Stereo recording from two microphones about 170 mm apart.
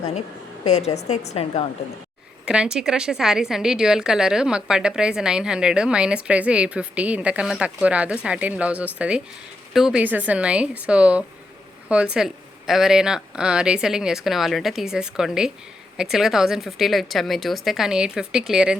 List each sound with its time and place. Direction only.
0.7 s a woman's voice: 40° left (ahead or behind)
2.5 s a woman's voice: 5° right (ahead or behind)